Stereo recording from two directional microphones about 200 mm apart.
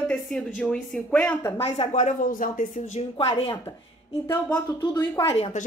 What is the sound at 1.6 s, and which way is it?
Speech, 30° left (ahead or behind).